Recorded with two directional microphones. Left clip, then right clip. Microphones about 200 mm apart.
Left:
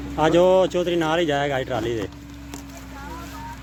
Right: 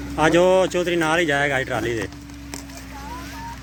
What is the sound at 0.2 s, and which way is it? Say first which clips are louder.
Speech: even; 5° left (ahead or behind).